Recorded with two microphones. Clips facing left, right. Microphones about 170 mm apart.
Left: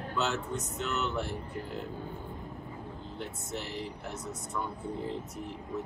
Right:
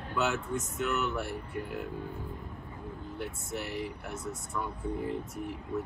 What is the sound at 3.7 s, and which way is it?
Speech, 60° right (ahead or behind).